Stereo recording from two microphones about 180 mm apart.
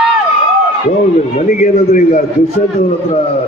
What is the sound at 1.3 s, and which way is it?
Speech, 45° left (ahead or behind).